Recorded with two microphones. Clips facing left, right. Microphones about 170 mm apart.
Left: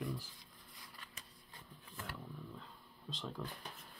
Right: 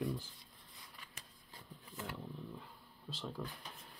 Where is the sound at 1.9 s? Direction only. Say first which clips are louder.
Right 3 dB; 20° right (ahead or behind).